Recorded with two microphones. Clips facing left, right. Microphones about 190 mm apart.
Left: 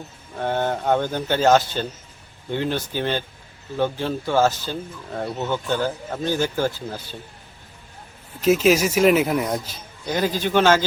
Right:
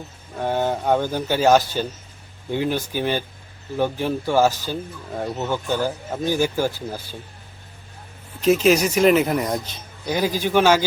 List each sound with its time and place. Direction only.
0.3 s speech: 10° right (ahead or behind)
8.4 s speech: 5° left (ahead or behind)
10.1 s speech: 10° right (ahead or behind)